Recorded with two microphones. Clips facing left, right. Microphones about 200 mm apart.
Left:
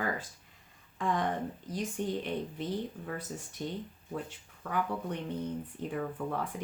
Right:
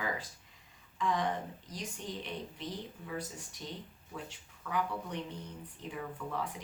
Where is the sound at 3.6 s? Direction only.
50° left (ahead or behind).